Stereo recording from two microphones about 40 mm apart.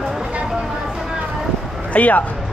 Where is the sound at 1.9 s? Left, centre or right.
Left.